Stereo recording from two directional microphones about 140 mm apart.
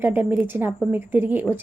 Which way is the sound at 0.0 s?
15° right (ahead or behind).